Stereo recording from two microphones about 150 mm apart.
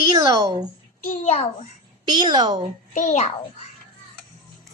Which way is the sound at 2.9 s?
55° left (ahead or behind).